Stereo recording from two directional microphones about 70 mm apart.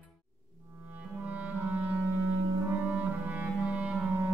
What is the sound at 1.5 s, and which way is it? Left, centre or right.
Clarinet, right.